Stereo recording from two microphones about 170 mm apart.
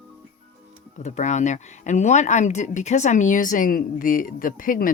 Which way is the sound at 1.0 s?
45° left (ahead or behind).